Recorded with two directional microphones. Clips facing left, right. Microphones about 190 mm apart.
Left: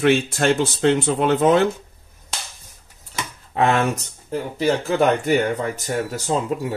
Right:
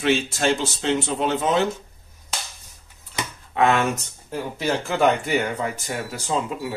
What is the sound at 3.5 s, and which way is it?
Speech, 35° left (ahead or behind).